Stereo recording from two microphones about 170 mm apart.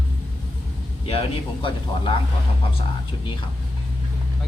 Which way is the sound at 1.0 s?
35° left (ahead or behind).